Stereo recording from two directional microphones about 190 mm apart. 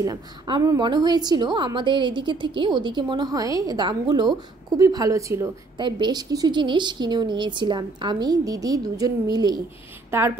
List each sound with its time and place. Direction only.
0.0 s a woman's voice: 20° right (ahead or behind)